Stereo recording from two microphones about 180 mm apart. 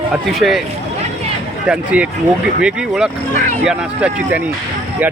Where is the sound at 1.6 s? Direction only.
5° right (ahead or behind).